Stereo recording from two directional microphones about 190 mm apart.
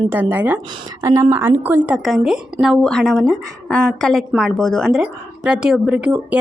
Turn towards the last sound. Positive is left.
turn(degrees=-5)  # may be behind; listen again after turning